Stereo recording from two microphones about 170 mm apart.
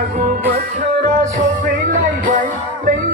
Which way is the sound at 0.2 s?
60° right (ahead or behind).